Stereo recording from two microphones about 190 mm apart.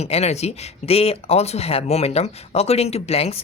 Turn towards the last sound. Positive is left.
turn(degrees=30)  # may be behind; listen again after turning